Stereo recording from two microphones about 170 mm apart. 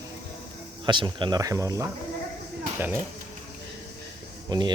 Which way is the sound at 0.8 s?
25° right (ahead or behind).